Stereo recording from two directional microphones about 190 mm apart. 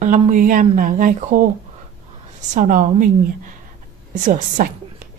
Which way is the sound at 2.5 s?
45° right (ahead or behind).